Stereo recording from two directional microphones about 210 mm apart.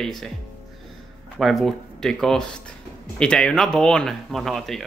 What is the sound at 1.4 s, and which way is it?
Speech, centre (ahead or behind).